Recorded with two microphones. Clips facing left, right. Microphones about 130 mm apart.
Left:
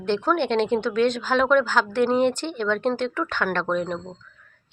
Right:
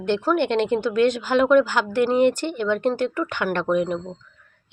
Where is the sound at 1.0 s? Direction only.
10° right (ahead or behind).